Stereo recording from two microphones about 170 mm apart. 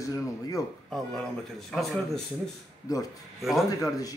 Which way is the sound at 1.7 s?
Centre (ahead or behind).